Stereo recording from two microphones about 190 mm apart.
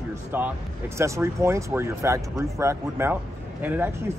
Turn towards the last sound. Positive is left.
turn(degrees=-10)  # may be behind; listen again after turning